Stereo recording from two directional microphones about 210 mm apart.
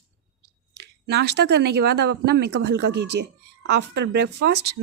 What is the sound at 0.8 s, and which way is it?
Speech, 50° right (ahead or behind).